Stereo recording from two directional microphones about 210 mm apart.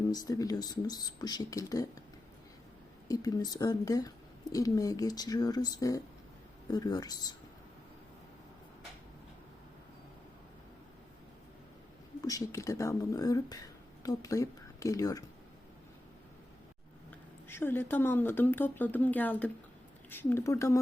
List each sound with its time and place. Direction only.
0.1 s speech: 15° left (ahead or behind)
3.1 s speech: 20° left (ahead or behind)
12.2 s speech: 15° left (ahead or behind)
17.1 s speech: 10° left (ahead or behind)